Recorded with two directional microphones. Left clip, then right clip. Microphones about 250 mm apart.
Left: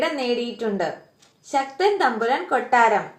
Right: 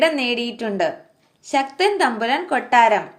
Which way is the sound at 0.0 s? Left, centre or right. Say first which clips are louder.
Right 4 dB; right.